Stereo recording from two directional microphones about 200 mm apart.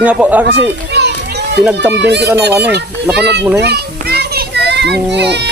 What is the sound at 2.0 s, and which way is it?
Speech, 60° right (ahead or behind).